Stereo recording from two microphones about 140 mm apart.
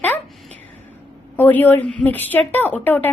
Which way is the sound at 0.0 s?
15° left (ahead or behind).